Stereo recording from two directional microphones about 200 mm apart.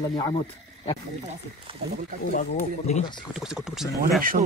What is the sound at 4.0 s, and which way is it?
Speech, 45° right (ahead or behind).